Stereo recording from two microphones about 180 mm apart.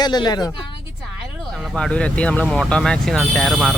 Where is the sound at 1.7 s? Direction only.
5° left (ahead or behind).